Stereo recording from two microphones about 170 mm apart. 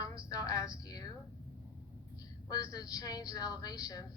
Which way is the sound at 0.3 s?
20° left (ahead or behind).